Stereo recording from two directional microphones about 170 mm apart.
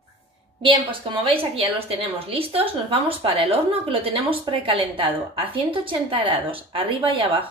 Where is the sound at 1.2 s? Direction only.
35° right (ahead or behind).